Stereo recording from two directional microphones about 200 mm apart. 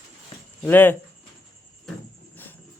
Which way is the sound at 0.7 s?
10° left (ahead or behind).